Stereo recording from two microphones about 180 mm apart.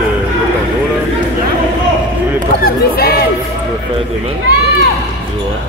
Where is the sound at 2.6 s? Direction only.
55° left (ahead or behind).